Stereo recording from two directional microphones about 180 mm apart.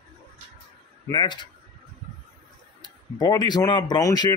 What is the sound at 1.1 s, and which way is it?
Speech, 25° left (ahead or behind).